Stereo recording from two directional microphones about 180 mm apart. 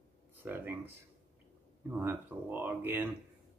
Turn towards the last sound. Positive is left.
turn(degrees=-10)  # may be behind; listen again after turning